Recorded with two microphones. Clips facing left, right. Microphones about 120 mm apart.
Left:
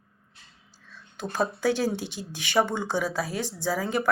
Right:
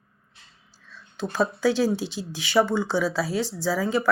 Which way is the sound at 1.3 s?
50° left (ahead or behind).